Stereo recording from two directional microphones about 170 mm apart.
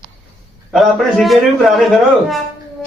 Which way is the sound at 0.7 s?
Centre (ahead or behind).